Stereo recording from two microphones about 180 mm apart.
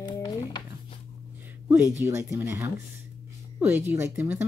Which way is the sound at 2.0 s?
15° right (ahead or behind).